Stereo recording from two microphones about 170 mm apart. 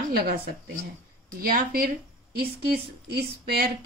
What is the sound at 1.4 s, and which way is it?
A woman's voice, 60° right (ahead or behind).